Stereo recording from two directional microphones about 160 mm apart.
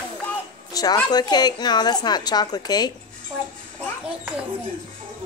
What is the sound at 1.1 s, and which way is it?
A woman's voice, 25° left (ahead or behind).